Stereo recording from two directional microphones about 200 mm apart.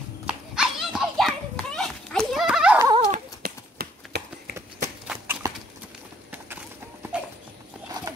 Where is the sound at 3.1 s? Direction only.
50° right (ahead or behind).